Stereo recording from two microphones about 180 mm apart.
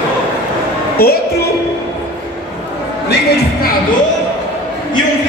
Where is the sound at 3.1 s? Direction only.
65° left (ahead or behind).